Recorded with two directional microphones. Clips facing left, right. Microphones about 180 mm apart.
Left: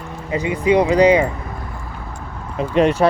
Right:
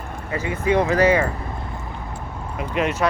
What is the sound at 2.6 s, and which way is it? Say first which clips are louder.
Speech: left 7 dB; 30° left (ahead or behind).